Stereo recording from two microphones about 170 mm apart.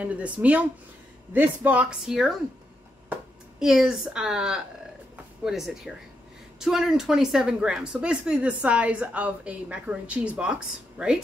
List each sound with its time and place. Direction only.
0.0 s a woman's voice: 10° right (ahead or behind)